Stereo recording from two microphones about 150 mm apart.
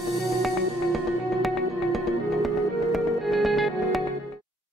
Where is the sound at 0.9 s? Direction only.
Centre (ahead or behind).